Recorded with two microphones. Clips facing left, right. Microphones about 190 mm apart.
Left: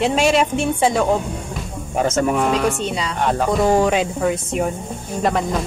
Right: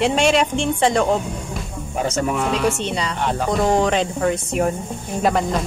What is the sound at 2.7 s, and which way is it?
Speech, centre (ahead or behind).